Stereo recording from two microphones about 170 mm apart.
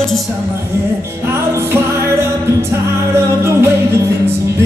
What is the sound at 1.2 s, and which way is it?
Music, 15° right (ahead or behind).